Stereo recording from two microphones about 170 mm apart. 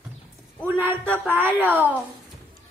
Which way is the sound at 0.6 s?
10° right (ahead or behind).